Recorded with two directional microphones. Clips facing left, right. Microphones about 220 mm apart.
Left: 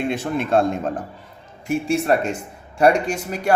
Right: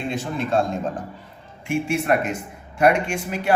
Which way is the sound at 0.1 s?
60° left (ahead or behind).